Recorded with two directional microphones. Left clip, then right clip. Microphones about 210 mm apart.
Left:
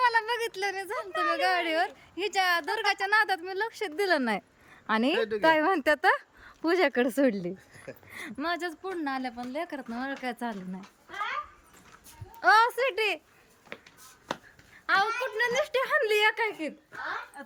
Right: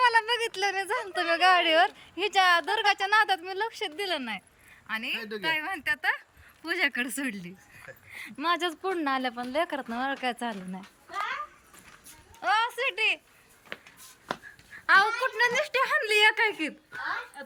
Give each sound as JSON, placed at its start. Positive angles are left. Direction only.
{"t": 0.0, "sound": "a woman's voice", "side_deg": 5}
{"t": 8.4, "sound": "speech", "side_deg": 5}
{"t": 12.4, "sound": "speech", "side_deg": 25}
{"t": 14.8, "sound": "speech", "side_deg": 5}